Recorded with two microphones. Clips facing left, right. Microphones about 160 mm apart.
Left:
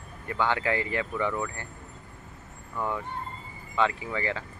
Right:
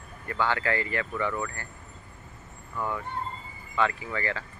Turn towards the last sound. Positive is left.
turn(degrees=15)  # may be behind; listen again after turning